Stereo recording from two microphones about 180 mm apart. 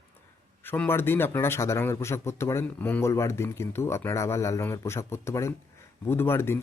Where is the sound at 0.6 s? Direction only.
10° left (ahead or behind).